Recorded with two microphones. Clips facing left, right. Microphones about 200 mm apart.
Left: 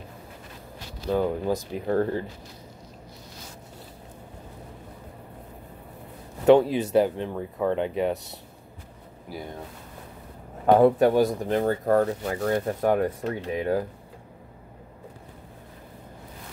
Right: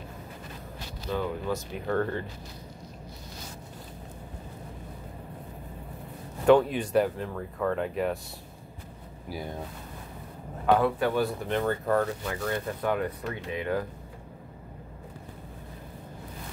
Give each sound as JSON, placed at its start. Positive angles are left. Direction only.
{"t": 1.1, "sound": "speech", "side_deg": 40}
{"t": 6.4, "sound": "speech", "side_deg": 25}
{"t": 9.3, "sound": "speech", "side_deg": 0}
{"t": 11.0, "sound": "speech", "side_deg": 40}